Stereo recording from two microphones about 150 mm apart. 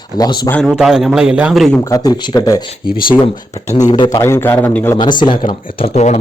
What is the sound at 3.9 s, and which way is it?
Speech, 30° left (ahead or behind).